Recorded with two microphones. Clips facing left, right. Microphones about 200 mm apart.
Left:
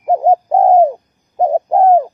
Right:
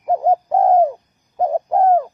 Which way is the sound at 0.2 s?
25° left (ahead or behind).